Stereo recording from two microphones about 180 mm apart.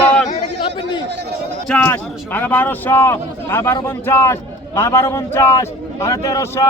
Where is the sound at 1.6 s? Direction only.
10° left (ahead or behind).